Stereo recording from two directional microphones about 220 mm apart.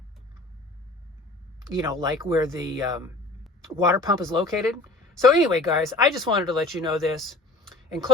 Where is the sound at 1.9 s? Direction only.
15° right (ahead or behind).